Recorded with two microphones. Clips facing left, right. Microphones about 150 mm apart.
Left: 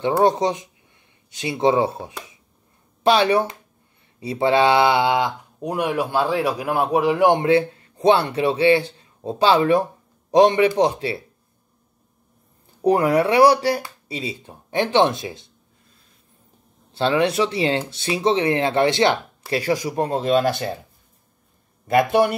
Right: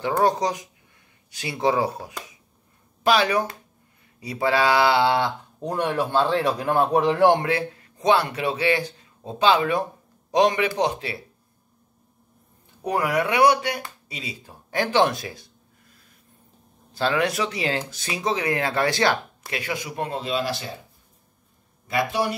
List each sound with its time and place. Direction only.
0.2 s speech: 25° left (ahead or behind)
12.8 s speech: 30° left (ahead or behind)
19.5 s speech: 35° left (ahead or behind); by 20.7 s 55° left (ahead or behind)
21.8 s speech: 55° left (ahead or behind)